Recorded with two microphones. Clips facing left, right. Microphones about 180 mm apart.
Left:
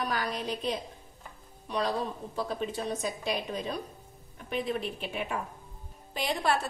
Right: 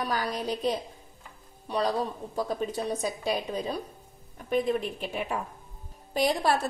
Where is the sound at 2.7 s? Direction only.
35° right (ahead or behind).